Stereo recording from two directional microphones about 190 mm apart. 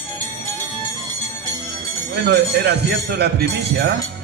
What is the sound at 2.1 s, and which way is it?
A man's voice, 60° right (ahead or behind).